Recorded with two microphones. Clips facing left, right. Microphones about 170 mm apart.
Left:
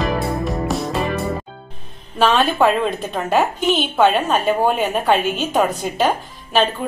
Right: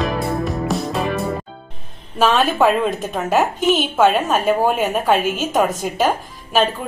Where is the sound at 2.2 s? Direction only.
Centre (ahead or behind).